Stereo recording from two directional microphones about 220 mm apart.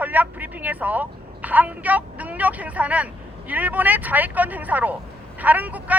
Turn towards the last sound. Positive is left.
turn(degrees=-5)  # may be behind; listen again after turning